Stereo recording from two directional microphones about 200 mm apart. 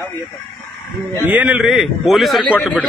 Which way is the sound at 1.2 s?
5° right (ahead or behind).